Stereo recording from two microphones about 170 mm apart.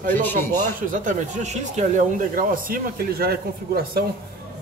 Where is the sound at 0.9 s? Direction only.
45° right (ahead or behind).